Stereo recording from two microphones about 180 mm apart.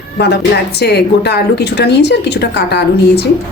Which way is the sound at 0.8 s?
65° left (ahead or behind).